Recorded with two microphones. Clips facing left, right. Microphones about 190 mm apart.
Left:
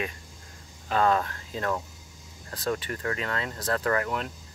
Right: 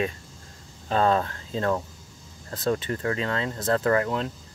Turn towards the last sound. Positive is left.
turn(degrees=-25)  # may be behind; listen again after turning